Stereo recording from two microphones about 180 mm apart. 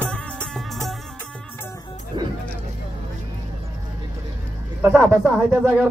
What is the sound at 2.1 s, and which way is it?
Music, 25° right (ahead or behind).